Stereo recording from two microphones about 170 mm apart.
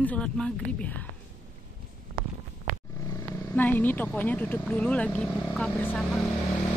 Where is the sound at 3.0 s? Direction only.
15° left (ahead or behind).